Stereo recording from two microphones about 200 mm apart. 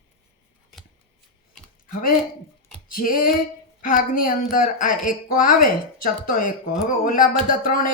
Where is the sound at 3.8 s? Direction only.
45° left (ahead or behind).